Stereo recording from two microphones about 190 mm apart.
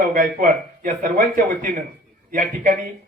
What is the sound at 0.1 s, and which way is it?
A man's voice, 45° right (ahead or behind).